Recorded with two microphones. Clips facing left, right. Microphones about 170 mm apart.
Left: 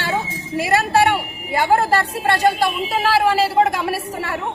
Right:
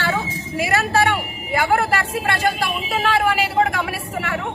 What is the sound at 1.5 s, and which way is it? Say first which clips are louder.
A woman's voice: left 2 dB; 30° left (ahead or behind).